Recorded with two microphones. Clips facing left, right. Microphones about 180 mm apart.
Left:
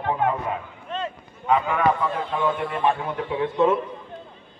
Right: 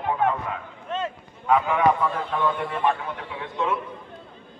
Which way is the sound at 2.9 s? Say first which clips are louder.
Left 3 dB; 30° left (ahead or behind).